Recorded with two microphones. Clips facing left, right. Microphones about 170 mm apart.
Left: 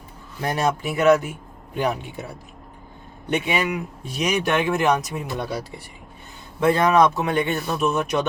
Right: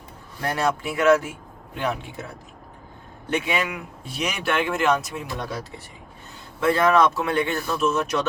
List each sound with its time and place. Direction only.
0.4 s speech: 20° left (ahead or behind)
6.6 s speech: 20° left (ahead or behind)